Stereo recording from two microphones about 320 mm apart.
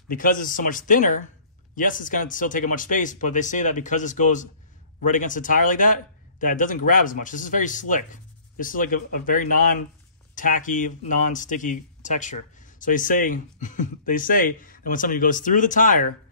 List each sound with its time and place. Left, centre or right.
0.1 s speech: left